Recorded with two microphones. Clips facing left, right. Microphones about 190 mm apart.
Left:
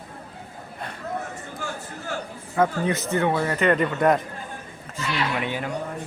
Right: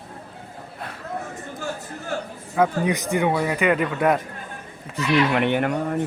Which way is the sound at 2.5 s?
10° right (ahead or behind).